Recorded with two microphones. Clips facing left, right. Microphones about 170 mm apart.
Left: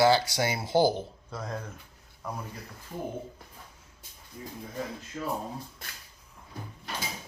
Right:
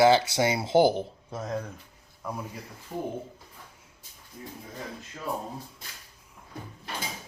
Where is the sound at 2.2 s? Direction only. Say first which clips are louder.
Right 2 dB; 10° right (ahead or behind).